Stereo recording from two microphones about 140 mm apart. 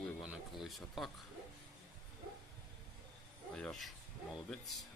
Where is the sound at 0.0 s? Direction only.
5° right (ahead or behind).